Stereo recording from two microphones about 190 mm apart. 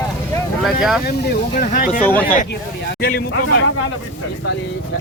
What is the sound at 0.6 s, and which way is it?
Vehicle, centre (ahead or behind).